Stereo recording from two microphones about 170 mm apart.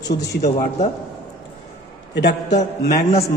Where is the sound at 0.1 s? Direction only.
75° left (ahead or behind).